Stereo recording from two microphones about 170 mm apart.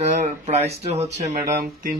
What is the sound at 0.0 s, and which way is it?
Speech, 40° right (ahead or behind).